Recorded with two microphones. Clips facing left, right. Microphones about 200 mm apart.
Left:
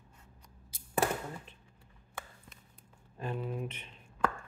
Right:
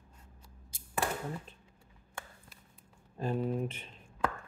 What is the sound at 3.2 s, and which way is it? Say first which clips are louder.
Speech: right 5 dB; 35° right (ahead or behind).